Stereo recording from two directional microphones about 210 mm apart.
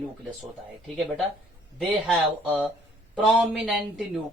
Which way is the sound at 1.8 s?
Centre (ahead or behind).